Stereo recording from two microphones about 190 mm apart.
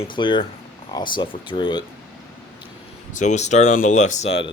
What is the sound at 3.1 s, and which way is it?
Speech, 40° left (ahead or behind).